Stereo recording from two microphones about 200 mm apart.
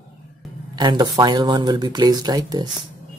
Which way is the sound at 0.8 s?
20° right (ahead or behind).